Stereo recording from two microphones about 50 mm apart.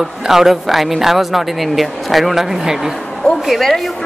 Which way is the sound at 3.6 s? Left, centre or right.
Centre.